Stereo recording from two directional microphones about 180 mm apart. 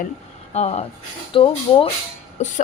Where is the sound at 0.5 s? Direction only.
35° left (ahead or behind).